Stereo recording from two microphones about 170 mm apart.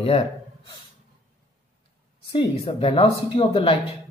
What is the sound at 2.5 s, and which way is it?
Speech, 35° left (ahead or behind).